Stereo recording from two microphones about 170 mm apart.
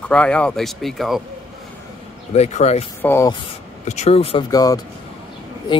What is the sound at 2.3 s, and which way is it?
Speech, 40° left (ahead or behind).